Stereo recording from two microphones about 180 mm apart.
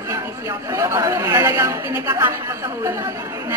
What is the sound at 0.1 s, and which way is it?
Speech, 15° right (ahead or behind).